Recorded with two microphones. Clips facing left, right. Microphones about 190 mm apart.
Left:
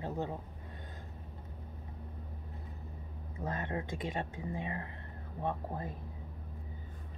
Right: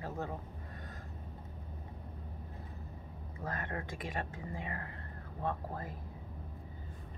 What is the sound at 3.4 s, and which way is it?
Speech, 20° left (ahead or behind).